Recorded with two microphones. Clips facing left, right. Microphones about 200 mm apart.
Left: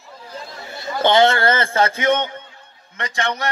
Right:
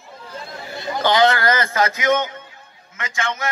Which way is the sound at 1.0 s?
25° left (ahead or behind).